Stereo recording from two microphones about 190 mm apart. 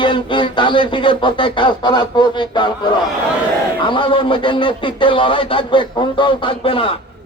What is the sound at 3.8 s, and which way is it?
A man's voice, 25° left (ahead or behind).